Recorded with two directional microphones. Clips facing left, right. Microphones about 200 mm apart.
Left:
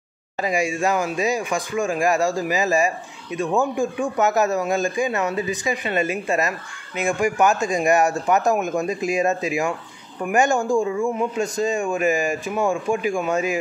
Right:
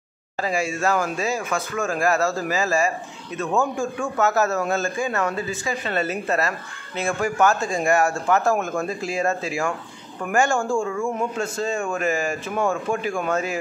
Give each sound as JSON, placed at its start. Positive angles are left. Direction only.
{"t": 0.4, "sound": "a man's voice", "side_deg": 15}